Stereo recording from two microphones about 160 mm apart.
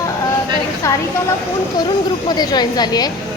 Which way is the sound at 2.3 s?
25° left (ahead or behind).